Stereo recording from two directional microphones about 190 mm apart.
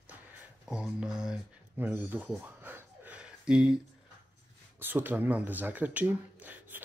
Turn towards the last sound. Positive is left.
turn(degrees=-10)  # may be behind; listen again after turning